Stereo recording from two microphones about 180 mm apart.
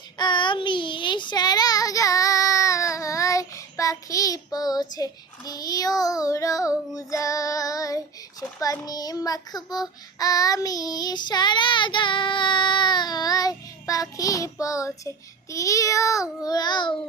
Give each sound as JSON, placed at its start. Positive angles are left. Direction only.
{"t": 0.2, "sound": "child singing", "side_deg": 25}